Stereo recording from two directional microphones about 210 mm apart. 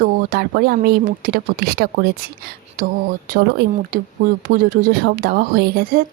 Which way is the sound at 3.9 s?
40° right (ahead or behind).